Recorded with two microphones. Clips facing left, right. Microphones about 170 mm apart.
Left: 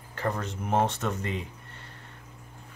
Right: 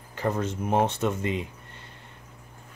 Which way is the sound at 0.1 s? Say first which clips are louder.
Right 4 dB; 20° right (ahead or behind).